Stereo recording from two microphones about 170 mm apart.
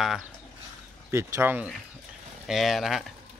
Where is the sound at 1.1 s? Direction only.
15° right (ahead or behind).